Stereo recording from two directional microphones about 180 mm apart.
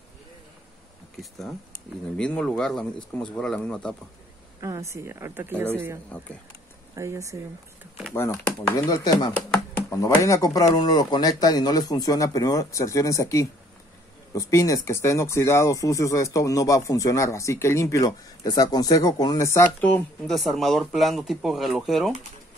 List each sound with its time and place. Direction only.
2.1 s speech: 5° left (ahead or behind)
4.6 s a woman's voice: 15° right (ahead or behind)
7.0 s a woman's voice: 15° right (ahead or behind)
8.1 s speech: 15° left (ahead or behind)